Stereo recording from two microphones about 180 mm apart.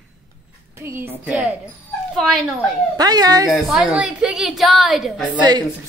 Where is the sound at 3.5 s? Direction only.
Centre (ahead or behind).